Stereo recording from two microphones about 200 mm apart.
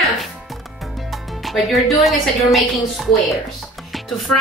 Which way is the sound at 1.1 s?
Centre (ahead or behind).